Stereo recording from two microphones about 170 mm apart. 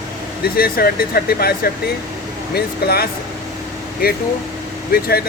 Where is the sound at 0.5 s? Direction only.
60° left (ahead or behind).